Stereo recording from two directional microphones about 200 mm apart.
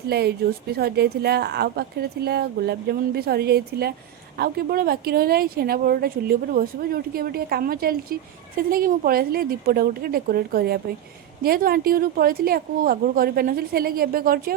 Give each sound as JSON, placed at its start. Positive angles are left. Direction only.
{"t": 0.1, "sound": "speech", "side_deg": -55}